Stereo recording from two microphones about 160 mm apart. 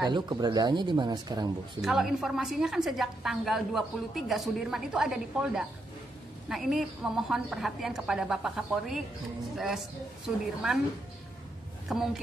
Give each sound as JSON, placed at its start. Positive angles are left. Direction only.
{"t": 0.0, "sound": "speech", "side_deg": -25}
{"t": 1.8, "sound": "a woman's voice", "side_deg": 0}
{"t": 11.9, "sound": "a woman's voice", "side_deg": 0}